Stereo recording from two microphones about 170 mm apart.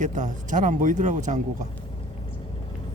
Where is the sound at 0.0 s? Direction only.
50° right (ahead or behind).